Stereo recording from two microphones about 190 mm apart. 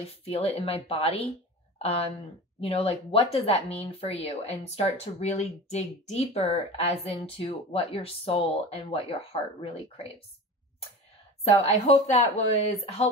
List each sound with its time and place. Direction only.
0.2 s speech: 30° left (ahead or behind)
11.4 s speech: 35° left (ahead or behind)